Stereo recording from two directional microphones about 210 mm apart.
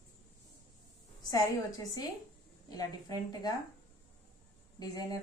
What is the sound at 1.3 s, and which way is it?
Speech, 15° left (ahead or behind).